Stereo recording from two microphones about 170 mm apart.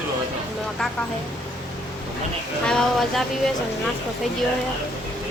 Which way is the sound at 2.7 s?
5° left (ahead or behind).